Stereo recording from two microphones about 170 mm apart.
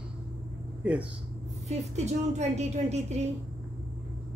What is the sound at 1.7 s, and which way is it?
A woman's voice, 40° right (ahead or behind).